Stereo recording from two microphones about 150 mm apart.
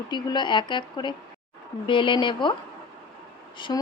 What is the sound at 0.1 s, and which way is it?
Speech, 30° left (ahead or behind).